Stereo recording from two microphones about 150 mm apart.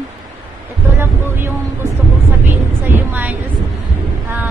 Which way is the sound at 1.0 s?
15° right (ahead or behind).